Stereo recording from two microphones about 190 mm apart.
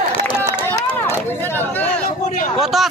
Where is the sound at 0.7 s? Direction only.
10° left (ahead or behind).